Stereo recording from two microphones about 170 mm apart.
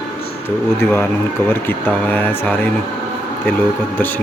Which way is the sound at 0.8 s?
15° left (ahead or behind).